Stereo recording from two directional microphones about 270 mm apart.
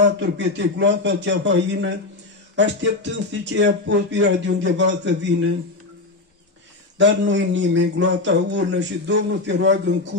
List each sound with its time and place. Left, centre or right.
0.0 s speech: right
7.0 s speech: right